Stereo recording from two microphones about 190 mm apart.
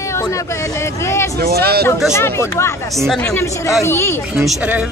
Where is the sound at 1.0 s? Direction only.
15° left (ahead or behind).